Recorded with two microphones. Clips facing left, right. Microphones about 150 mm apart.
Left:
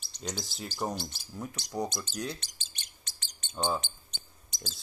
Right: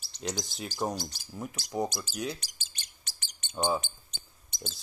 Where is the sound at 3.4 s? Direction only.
10° right (ahead or behind).